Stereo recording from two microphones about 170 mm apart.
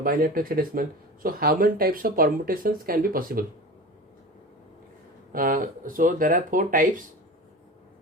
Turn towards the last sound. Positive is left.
turn(degrees=-55)  # may be behind; listen again after turning